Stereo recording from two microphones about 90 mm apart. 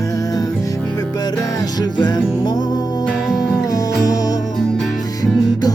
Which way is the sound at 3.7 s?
40° left (ahead or behind).